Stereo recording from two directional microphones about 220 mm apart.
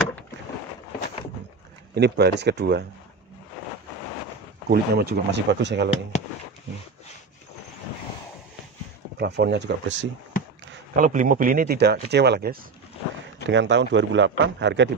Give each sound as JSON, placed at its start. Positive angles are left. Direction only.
{"t": 2.0, "sound": "speech", "side_deg": -50}
{"t": 4.6, "sound": "speech", "side_deg": -45}
{"t": 6.1, "sound": "speech", "side_deg": 30}
{"t": 9.2, "sound": "speech", "side_deg": -50}
{"t": 11.0, "sound": "a man's voice", "side_deg": -35}